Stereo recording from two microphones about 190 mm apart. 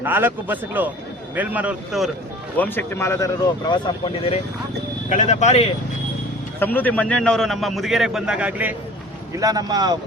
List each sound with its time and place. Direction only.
0.0 s a man's voice: 10° right (ahead or behind)
2.6 s speech: 10° left (ahead or behind)
4.0 s speech: 30° left (ahead or behind)
6.6 s a man's voice: 10° left (ahead or behind); by 8.7 s 5° right (ahead or behind)
9.4 s speech: 20° right (ahead or behind)